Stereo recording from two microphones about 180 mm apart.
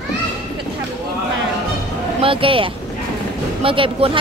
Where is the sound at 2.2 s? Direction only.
30° right (ahead or behind).